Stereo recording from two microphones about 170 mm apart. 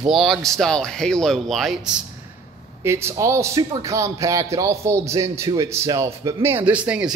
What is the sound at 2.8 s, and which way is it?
A man's voice, 15° right (ahead or behind).